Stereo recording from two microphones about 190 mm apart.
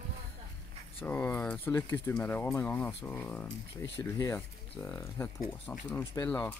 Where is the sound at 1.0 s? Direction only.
10° left (ahead or behind).